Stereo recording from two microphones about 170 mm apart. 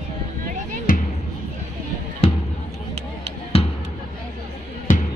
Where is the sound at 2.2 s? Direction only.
35° left (ahead or behind).